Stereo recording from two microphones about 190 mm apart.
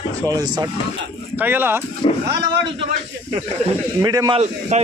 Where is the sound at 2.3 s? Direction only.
60° right (ahead or behind).